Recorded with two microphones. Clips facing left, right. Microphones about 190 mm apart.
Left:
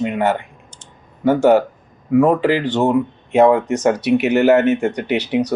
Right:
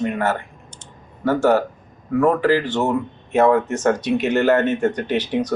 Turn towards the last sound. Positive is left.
turn(degrees=10)  # may be behind; listen again after turning